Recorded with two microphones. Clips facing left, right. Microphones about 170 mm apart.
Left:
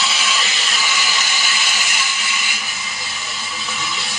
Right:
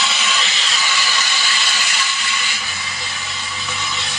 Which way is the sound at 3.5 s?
Centre (ahead or behind).